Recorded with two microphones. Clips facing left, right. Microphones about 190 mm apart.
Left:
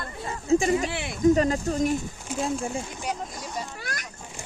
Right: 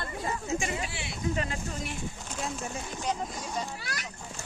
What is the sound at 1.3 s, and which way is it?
Speech, 40° left (ahead or behind).